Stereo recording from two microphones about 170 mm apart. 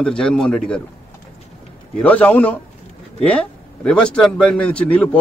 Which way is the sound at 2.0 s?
10° left (ahead or behind).